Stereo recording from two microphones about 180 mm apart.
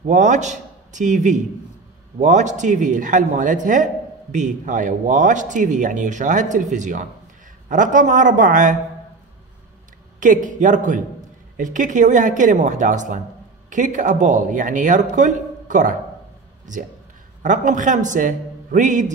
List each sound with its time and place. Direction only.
0.0 s a man's voice: 40° right (ahead or behind)
10.2 s speech: 45° right (ahead or behind)
17.4 s speech: 45° right (ahead or behind)